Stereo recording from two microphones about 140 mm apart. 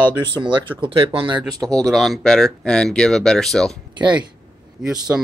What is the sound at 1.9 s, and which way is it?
Speech, centre (ahead or behind).